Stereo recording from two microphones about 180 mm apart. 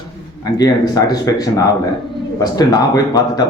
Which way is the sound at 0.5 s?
20° left (ahead or behind).